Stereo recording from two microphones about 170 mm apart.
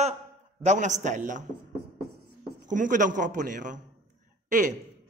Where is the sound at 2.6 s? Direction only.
50° right (ahead or behind).